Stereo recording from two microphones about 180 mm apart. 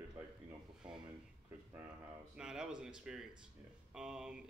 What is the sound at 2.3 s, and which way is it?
Speech, 5° right (ahead or behind).